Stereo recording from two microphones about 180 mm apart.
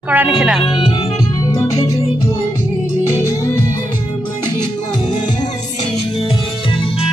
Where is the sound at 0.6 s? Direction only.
25° left (ahead or behind).